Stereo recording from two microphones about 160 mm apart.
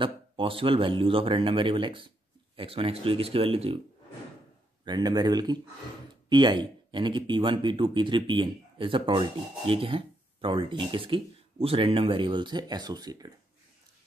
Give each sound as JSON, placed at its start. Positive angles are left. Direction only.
{"t": 0.0, "sound": "speech", "side_deg": -35}
{"t": 4.8, "sound": "speech", "side_deg": -25}